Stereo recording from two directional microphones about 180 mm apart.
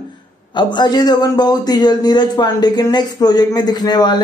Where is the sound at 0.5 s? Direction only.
25° left (ahead or behind).